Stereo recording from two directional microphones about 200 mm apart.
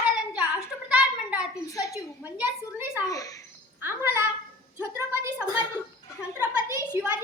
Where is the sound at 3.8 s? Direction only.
10° right (ahead or behind).